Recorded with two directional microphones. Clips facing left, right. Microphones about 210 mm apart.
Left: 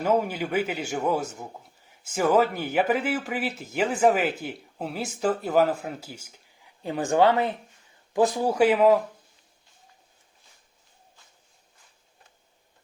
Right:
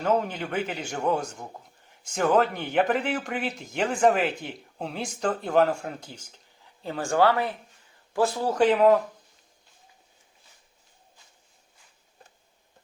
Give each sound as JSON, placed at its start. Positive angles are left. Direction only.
{"t": 0.0, "sound": "a man's voice", "side_deg": 10}
{"t": 6.8, "sound": "a man's voice", "side_deg": 20}